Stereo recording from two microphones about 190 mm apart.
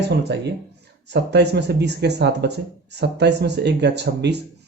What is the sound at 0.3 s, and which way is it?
Speech, 65° right (ahead or behind).